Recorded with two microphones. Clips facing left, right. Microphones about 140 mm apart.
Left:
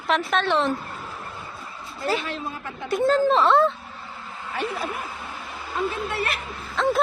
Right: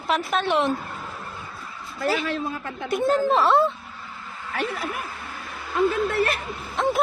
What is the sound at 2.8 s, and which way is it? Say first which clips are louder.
Speech: left 1 dB; 15° right (ahead or behind).